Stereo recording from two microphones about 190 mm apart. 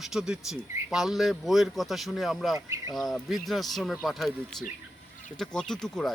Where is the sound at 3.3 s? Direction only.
Centre (ahead or behind).